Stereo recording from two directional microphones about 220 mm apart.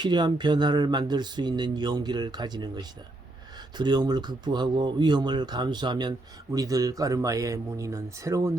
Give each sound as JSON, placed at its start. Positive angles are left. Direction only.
{"t": 0.0, "sound": "speech", "side_deg": -20}